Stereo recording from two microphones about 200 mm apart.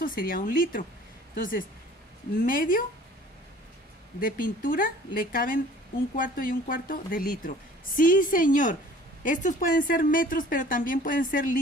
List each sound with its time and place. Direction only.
0.0 s speech: 45° left (ahead or behind)
2.4 s speech: 45° left (ahead or behind)
4.2 s speech: 45° left (ahead or behind)